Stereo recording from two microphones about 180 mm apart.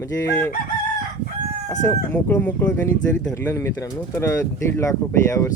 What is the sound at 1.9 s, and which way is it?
Speech, 10° left (ahead or behind).